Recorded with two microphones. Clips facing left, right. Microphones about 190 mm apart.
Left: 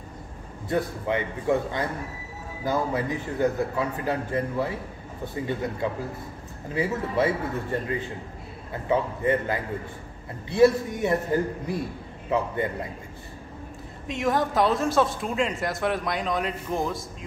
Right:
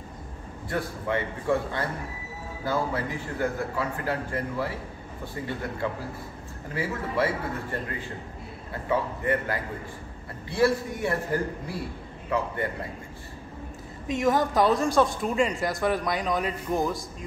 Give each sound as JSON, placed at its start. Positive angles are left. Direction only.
{"t": 0.7, "sound": "a man's voice", "side_deg": 20}
{"t": 8.8, "sound": "a man's voice", "side_deg": 20}
{"t": 14.0, "sound": "a woman's voice", "side_deg": 0}